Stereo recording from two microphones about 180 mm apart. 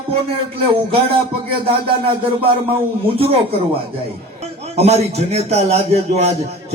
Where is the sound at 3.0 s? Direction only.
30° right (ahead or behind).